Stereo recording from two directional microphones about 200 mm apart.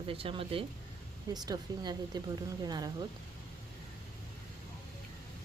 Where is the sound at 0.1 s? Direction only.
25° right (ahead or behind).